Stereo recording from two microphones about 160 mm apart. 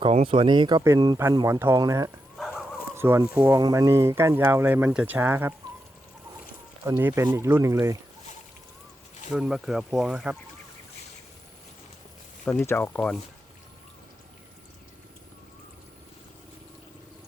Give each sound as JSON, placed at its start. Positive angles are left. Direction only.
{"t": 0.0, "sound": "speech", "side_deg": -35}
{"t": 1.5, "sound": "speech", "side_deg": -15}
{"t": 6.8, "sound": "speech", "side_deg": -15}
{"t": 9.3, "sound": "speech", "side_deg": -5}
{"t": 12.5, "sound": "speech", "side_deg": 15}